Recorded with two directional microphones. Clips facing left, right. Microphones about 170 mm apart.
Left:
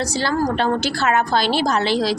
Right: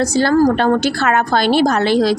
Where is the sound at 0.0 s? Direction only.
50° right (ahead or behind).